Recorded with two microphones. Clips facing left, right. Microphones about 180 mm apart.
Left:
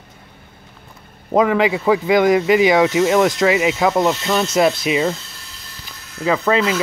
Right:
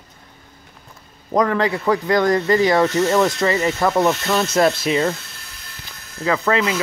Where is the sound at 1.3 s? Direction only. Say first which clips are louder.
Left 3 dB; 10° left (ahead or behind).